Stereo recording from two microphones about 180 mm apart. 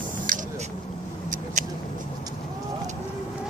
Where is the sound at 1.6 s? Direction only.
45° right (ahead or behind).